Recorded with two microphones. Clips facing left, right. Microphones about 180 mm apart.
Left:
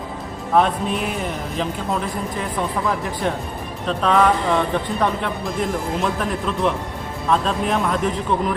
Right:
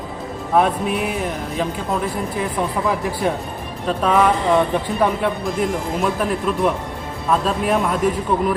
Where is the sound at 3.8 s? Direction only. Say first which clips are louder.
Right 1 dB; 5° right (ahead or behind).